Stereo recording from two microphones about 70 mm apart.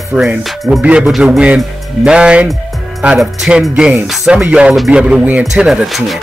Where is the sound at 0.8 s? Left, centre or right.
Centre.